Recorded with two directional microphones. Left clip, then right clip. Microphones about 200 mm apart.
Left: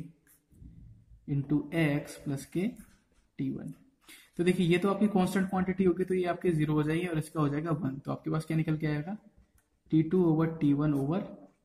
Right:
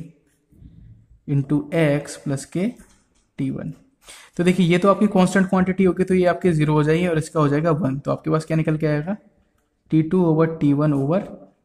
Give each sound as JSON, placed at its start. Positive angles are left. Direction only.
{"t": 1.2, "sound": "speech", "side_deg": -40}